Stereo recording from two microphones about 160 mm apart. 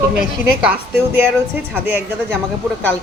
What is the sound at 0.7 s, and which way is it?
A woman's voice, 15° right (ahead or behind).